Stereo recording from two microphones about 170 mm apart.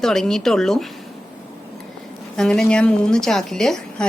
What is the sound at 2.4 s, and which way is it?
Speech, 5° left (ahead or behind).